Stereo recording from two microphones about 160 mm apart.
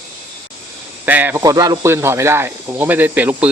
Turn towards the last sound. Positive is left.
turn(degrees=-10)  # may be behind; listen again after turning